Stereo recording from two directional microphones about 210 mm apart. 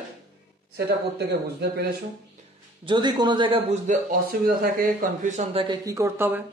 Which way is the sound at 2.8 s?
20° right (ahead or behind).